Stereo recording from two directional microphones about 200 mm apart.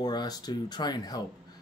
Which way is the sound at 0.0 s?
20° left (ahead or behind).